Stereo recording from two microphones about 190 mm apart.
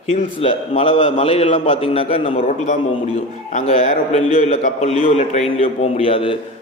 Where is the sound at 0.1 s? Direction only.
35° left (ahead or behind).